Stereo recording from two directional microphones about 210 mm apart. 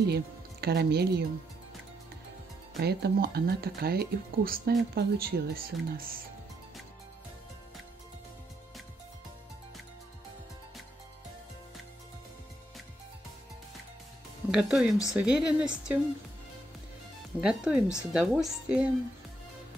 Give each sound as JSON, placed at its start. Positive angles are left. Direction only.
{"t": 0.0, "sound": "speech", "side_deg": -50}
{"t": 2.8, "sound": "speech", "side_deg": -50}
{"t": 14.5, "sound": "a woman's voice", "side_deg": -5}
{"t": 17.4, "sound": "a woman's voice", "side_deg": -5}